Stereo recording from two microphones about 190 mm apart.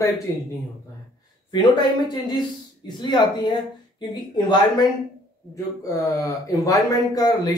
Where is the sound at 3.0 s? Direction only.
25° left (ahead or behind).